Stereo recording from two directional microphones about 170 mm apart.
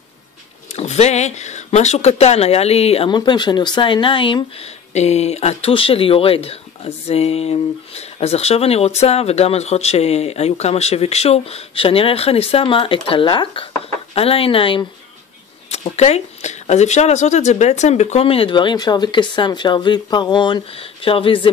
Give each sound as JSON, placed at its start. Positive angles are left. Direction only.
{"t": 0.7, "sound": "speech", "side_deg": 40}